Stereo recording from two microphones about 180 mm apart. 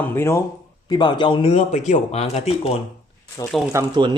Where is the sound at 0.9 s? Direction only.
25° left (ahead or behind).